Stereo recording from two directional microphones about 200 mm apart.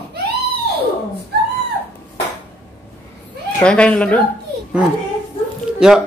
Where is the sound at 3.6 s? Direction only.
5° left (ahead or behind).